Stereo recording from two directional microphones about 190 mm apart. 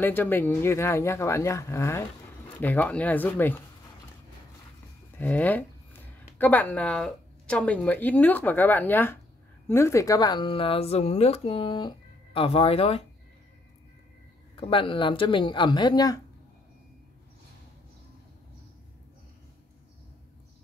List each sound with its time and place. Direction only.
0.0 s speech: 10° left (ahead or behind)
5.1 s speech: 10° left (ahead or behind); by 13.0 s 30° left (ahead or behind)
14.5 s speech: 25° left (ahead or behind)